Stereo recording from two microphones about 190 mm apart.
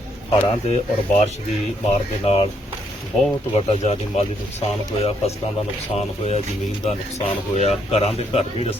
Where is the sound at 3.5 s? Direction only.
35° left (ahead or behind).